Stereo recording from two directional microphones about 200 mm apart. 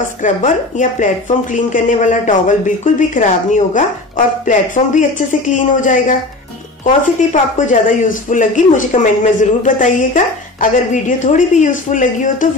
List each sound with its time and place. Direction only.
0.0 s speech: 40° left (ahead or behind)